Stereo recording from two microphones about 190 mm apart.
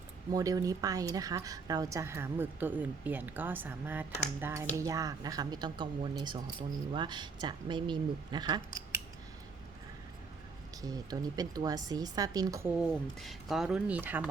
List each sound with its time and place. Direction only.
0.3 s a woman's voice: 20° right (ahead or behind)
10.8 s speech: 20° right (ahead or behind)
13.1 s speech: centre (ahead or behind)